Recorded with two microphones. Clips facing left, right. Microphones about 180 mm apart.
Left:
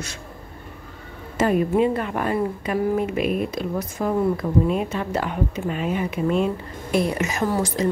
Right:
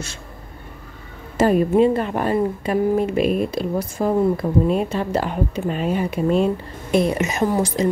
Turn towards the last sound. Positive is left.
turn(degrees=-20)  # may be behind; listen again after turning